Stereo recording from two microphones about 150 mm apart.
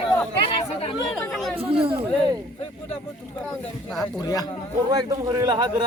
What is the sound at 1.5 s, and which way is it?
Speech, 40° right (ahead or behind).